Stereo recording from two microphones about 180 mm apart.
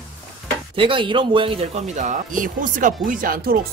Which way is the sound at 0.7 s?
30° right (ahead or behind).